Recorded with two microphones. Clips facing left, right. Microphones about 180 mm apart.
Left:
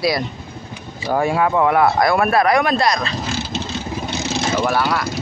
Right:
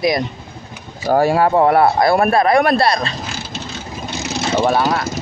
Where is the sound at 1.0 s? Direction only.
40° right (ahead or behind).